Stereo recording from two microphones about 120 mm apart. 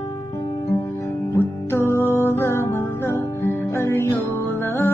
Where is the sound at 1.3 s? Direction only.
20° left (ahead or behind).